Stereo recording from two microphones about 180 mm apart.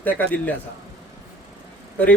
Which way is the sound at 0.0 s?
10° left (ahead or behind).